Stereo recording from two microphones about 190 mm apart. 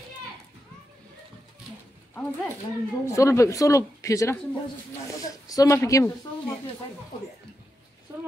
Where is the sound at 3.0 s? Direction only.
15° left (ahead or behind).